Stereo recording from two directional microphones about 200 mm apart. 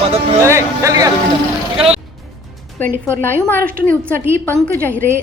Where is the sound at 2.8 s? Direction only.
10° left (ahead or behind).